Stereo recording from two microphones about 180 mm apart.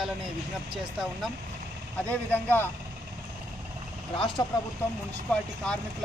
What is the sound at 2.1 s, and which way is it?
Speech, 10° left (ahead or behind).